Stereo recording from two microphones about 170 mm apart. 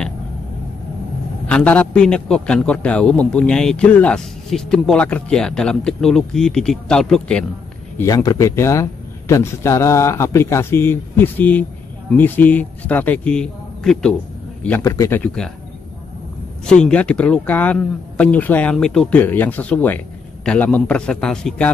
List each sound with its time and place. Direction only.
1.5 s a man's voice: 10° left (ahead or behind)
8.0 s speech: 20° left (ahead or behind)
16.6 s a man's voice: 5° left (ahead or behind)